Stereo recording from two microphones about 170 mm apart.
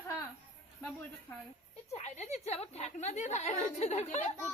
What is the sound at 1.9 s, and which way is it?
A woman's voice, 40° left (ahead or behind).